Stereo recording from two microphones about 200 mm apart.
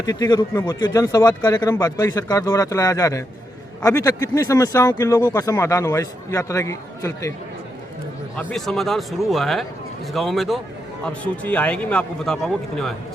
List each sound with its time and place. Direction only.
0.0 s a man's voice: 20° left (ahead or behind)
8.4 s a man's voice: centre (ahead or behind)